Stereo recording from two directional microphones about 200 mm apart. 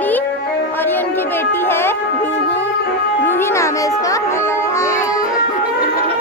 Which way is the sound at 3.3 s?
10° left (ahead or behind).